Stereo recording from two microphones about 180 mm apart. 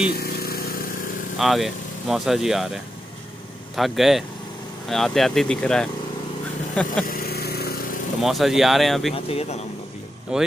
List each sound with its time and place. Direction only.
0.1 s engine: 60° left (ahead or behind)
1.4 s speech: centre (ahead or behind)
7.1 s vehicle: 55° left (ahead or behind)
8.2 s speech: centre (ahead or behind)
9.1 s speech: 35° left (ahead or behind)
10.3 s speech: 5° right (ahead or behind)